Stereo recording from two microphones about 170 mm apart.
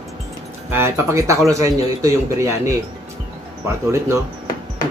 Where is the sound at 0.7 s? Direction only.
15° right (ahead or behind).